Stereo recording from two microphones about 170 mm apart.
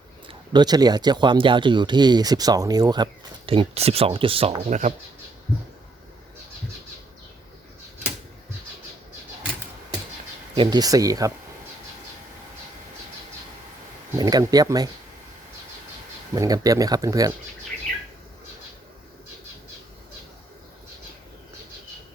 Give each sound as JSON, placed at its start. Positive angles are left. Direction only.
{"t": 0.3, "sound": "speech", "side_deg": -25}
{"t": 10.5, "sound": "speech", "side_deg": -25}
{"t": 14.2, "sound": "speech", "side_deg": -25}
{"t": 16.3, "sound": "speech", "side_deg": -20}